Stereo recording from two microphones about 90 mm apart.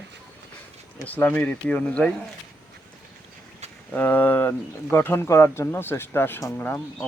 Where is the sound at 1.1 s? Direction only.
20° left (ahead or behind).